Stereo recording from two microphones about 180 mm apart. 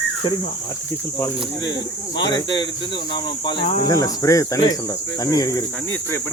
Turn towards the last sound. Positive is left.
turn(degrees=20)  # may be behind; listen again after turning